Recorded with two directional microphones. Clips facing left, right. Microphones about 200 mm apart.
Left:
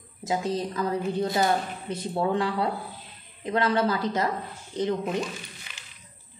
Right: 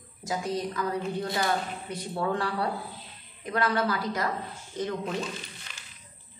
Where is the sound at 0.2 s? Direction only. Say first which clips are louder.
Left 3 dB; 25° left (ahead or behind).